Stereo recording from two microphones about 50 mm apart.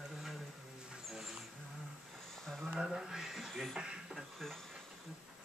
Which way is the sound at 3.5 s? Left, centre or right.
Centre.